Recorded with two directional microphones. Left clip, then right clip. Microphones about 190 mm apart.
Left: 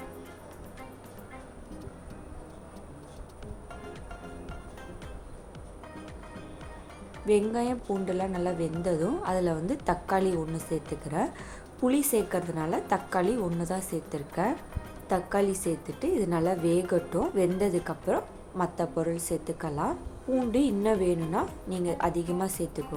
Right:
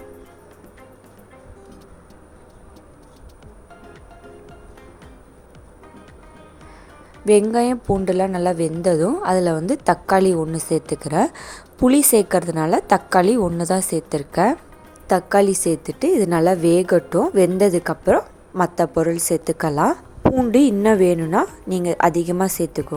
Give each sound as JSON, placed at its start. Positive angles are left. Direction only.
{"t": 7.3, "sound": "a woman's voice", "side_deg": -50}